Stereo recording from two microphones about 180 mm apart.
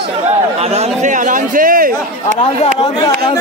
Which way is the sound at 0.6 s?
35° right (ahead or behind).